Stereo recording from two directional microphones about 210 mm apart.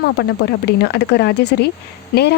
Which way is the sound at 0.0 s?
50° left (ahead or behind).